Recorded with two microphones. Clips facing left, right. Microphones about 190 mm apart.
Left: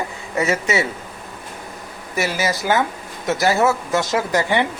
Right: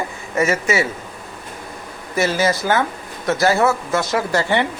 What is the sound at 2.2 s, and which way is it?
Speech, 15° left (ahead or behind).